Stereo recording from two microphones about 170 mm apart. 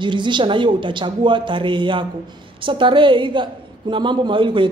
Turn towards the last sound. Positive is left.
turn(degrees=-30)  # may be behind; listen again after turning